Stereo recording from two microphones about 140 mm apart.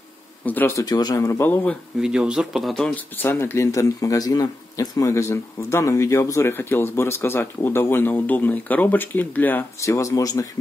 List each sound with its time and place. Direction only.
0.5 s speech: 15° left (ahead or behind)
2.0 s speech: 5° right (ahead or behind)
3.2 s speech: 15° left (ahead or behind)